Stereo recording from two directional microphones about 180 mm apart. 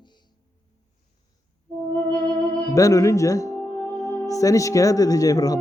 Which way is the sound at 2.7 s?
20° left (ahead or behind).